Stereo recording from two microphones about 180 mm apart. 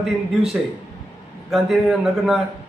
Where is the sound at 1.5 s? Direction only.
Centre (ahead or behind).